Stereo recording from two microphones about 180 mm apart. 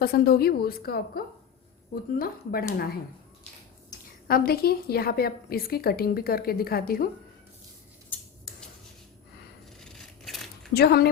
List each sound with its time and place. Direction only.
0.0 s a woman's voice: 60° left (ahead or behind)
4.3 s a woman's voice: 55° left (ahead or behind)
9.8 s a sound: centre (ahead or behind)
10.8 s a woman's voice: 60° left (ahead or behind)